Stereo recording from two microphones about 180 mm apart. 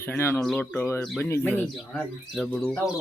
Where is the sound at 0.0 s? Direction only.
10° left (ahead or behind).